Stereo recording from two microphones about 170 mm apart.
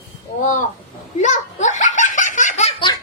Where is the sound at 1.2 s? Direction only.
45° left (ahead or behind).